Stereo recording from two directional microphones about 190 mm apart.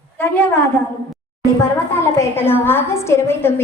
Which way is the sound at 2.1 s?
10° left (ahead or behind).